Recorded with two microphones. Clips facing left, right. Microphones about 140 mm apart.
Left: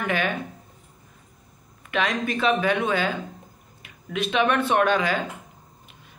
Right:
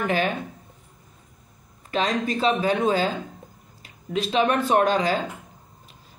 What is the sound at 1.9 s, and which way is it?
Speech, 30° right (ahead or behind).